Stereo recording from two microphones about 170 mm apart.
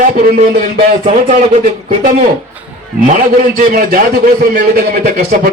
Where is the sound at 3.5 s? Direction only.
55° right (ahead or behind).